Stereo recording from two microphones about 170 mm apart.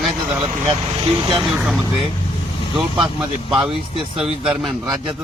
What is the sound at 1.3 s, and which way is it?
Speech, centre (ahead or behind).